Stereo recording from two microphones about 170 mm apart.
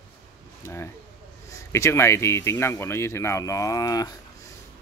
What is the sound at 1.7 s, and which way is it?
Speech, 15° left (ahead or behind).